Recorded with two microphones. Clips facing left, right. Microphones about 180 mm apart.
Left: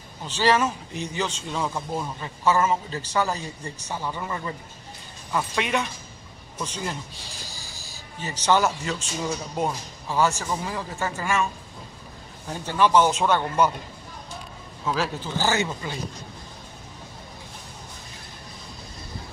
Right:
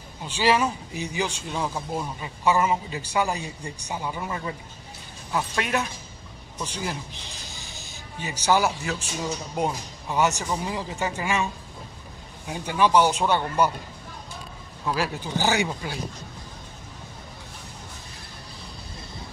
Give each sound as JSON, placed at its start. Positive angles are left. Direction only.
{"t": 0.3, "sound": "speech", "side_deg": -10}
{"t": 10.0, "sound": "speech", "side_deg": -20}
{"t": 12.4, "sound": "speech", "side_deg": -10}
{"t": 15.0, "sound": "speech", "side_deg": -15}